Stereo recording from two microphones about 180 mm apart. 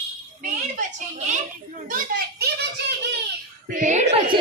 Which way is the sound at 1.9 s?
50° right (ahead or behind).